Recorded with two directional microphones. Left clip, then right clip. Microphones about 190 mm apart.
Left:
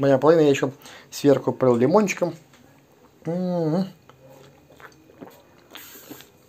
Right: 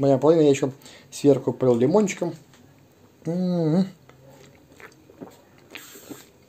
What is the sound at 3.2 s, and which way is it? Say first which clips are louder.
Speech: left 1 dB; 25° right (ahead or behind).